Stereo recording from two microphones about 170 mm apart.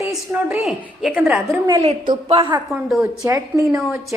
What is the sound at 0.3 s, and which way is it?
A woman's voice, 15° right (ahead or behind).